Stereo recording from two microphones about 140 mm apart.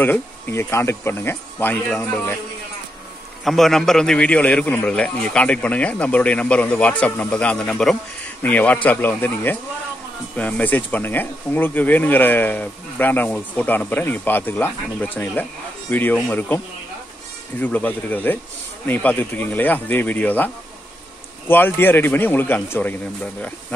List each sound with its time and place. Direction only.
0.0 s a man's voice: 15° left (ahead or behind)
3.4 s a man's voice: centre (ahead or behind)